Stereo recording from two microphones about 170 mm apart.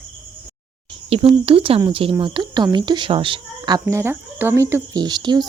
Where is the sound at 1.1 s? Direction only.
35° right (ahead or behind).